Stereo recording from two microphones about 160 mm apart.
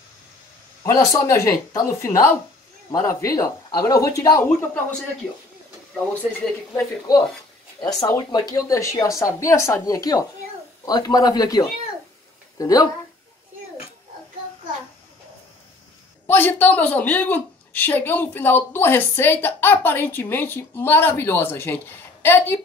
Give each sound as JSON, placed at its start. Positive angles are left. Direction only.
{"t": 0.8, "sound": "a woman's voice", "side_deg": 20}
{"t": 7.8, "sound": "a woman's voice", "side_deg": 25}
{"t": 16.3, "sound": "a woman's voice", "side_deg": 15}